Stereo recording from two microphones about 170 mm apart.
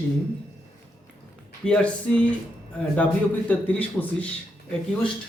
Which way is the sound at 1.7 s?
5° left (ahead or behind).